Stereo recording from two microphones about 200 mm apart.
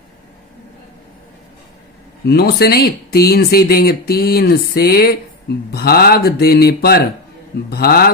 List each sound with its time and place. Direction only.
2.2 s speech: 50° left (ahead or behind)